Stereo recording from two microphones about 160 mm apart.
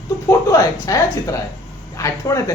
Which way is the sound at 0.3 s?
20° left (ahead or behind).